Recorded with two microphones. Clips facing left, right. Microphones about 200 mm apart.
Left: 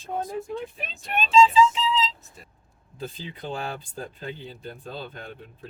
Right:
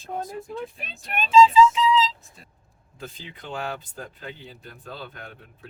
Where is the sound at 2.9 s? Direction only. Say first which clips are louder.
Left 4 dB; 35° left (ahead or behind).